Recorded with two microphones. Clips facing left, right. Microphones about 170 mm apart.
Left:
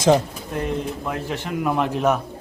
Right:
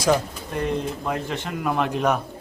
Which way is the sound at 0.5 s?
Centre (ahead or behind).